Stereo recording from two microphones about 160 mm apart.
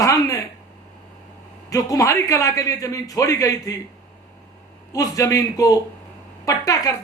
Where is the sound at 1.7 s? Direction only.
20° left (ahead or behind).